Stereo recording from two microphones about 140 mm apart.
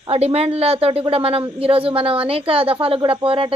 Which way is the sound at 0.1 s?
45° right (ahead or behind).